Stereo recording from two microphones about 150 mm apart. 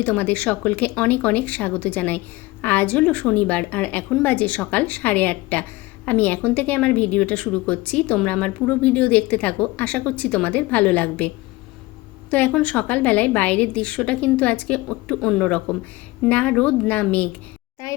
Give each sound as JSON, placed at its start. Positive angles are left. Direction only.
{"t": 0.0, "sound": "speech", "side_deg": 10}
{"t": 12.3, "sound": "speech", "side_deg": 10}
{"t": 17.8, "sound": "a child's voice", "side_deg": 20}